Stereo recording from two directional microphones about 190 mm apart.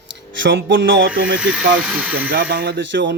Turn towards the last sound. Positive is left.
turn(degrees=-75)  # may be behind; listen again after turning